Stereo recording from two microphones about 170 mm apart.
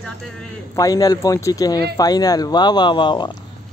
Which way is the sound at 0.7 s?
20° left (ahead or behind).